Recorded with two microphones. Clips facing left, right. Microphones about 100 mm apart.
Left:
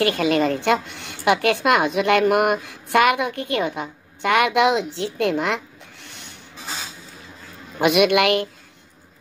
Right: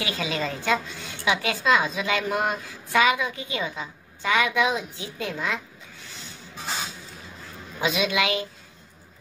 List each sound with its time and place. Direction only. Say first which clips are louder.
0.0 s a woman's voice: left 10 dB; 55° left (ahead or behind)
7.8 s a woman's voice: left 8 dB; 65° left (ahead or behind)